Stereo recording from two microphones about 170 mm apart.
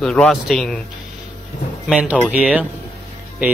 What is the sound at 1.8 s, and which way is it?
Speech, 5° right (ahead or behind).